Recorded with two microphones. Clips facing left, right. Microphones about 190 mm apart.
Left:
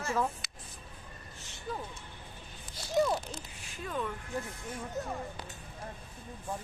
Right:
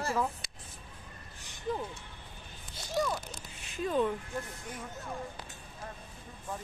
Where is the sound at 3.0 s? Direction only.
20° left (ahead or behind).